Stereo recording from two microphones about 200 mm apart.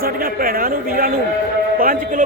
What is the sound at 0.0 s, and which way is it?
A man's voice, 45° right (ahead or behind).